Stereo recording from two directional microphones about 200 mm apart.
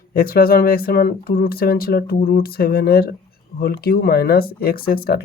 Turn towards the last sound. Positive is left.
turn(degrees=50)  # may be behind; listen again after turning